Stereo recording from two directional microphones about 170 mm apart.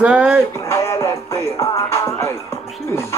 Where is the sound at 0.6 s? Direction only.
15° left (ahead or behind).